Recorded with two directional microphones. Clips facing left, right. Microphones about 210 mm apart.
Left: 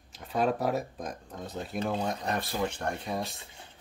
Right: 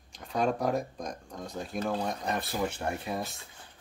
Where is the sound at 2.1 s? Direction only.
Centre (ahead or behind).